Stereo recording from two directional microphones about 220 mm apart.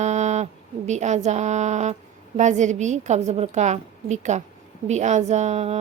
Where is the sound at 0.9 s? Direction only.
30° right (ahead or behind).